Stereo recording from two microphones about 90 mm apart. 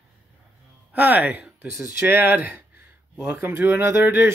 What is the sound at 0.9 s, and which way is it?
Speech, 20° right (ahead or behind).